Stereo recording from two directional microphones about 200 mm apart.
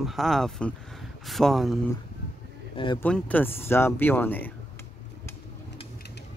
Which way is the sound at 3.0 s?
10° left (ahead or behind).